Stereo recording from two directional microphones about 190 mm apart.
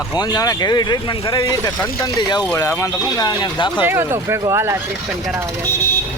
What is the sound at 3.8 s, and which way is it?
Speech, 10° right (ahead or behind).